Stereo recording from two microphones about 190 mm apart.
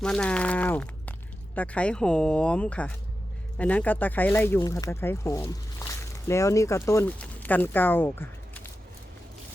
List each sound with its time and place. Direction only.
0.0 s speech: 5° left (ahead or behind)